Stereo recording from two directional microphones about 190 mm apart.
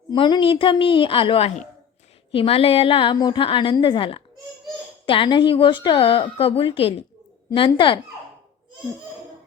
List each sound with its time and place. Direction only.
0.1 s a woman's voice: 25° left (ahead or behind)